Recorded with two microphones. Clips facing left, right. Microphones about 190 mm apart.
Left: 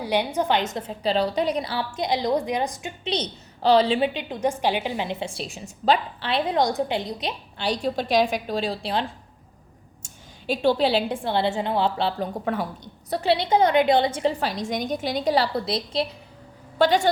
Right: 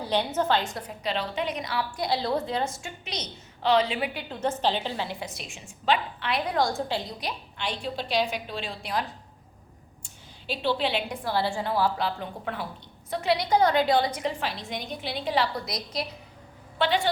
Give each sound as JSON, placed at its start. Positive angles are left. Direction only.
{"t": 0.0, "sound": "a woman's voice", "side_deg": 10}
{"t": 3.0, "sound": "a woman's voice", "side_deg": 30}
{"t": 7.6, "sound": "a woman's voice", "side_deg": 40}
{"t": 10.0, "sound": "a woman's voice", "side_deg": 50}
{"t": 12.5, "sound": "a woman's voice", "side_deg": 45}
{"t": 16.7, "sound": "a woman's voice", "side_deg": 40}